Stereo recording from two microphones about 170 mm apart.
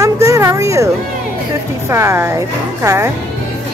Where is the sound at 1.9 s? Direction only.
15° right (ahead or behind).